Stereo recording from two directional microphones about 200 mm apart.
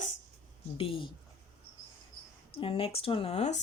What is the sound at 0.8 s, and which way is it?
Speech, 25° left (ahead or behind).